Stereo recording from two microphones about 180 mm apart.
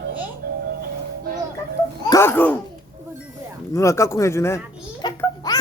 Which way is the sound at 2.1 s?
15° left (ahead or behind).